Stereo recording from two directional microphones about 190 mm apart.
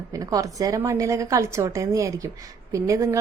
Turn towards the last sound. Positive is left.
turn(degrees=-15)  # may be behind; listen again after turning